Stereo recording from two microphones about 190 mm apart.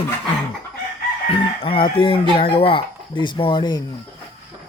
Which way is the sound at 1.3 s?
30° left (ahead or behind).